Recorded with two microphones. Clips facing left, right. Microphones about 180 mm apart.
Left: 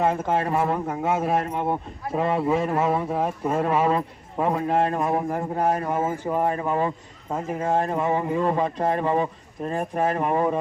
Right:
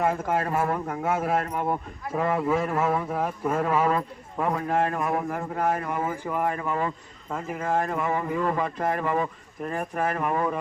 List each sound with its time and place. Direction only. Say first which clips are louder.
0.0 s a man's voice: left 2 dB; 25° left (ahead or behind)